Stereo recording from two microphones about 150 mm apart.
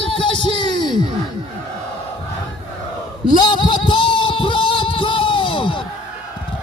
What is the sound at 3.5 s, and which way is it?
Music, 30° left (ahead or behind).